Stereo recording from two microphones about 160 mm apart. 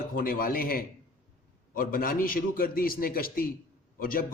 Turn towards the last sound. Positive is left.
turn(degrees=60)  # may be behind; listen again after turning